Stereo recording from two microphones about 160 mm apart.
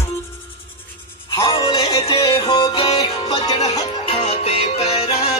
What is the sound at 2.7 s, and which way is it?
Music, 40° left (ahead or behind).